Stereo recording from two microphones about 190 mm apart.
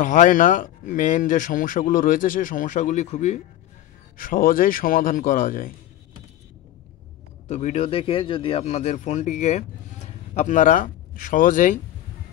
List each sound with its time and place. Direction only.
0.0 s speech: 40° left (ahead or behind)
4.2 s speech: 45° left (ahead or behind)
7.4 s speech: 35° left (ahead or behind)